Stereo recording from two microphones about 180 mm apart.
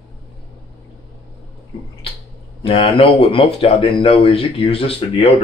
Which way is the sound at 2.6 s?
35° left (ahead or behind).